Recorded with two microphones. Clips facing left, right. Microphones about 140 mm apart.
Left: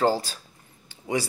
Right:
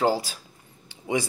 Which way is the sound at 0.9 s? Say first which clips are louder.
Right 1 dB; 20° right (ahead or behind).